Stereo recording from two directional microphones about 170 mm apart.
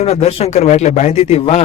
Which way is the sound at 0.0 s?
40° left (ahead or behind).